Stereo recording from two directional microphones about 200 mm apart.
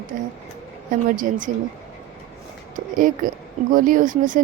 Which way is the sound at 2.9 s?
40° right (ahead or behind).